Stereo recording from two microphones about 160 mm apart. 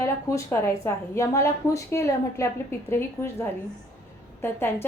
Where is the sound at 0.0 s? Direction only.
20° left (ahead or behind).